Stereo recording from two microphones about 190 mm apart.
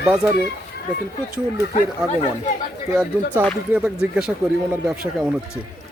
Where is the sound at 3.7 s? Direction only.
5° right (ahead or behind).